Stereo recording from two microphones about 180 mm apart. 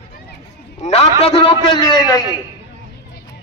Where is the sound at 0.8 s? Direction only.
35° left (ahead or behind).